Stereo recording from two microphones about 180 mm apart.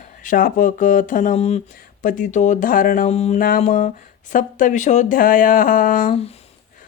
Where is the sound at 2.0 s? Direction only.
45° left (ahead or behind).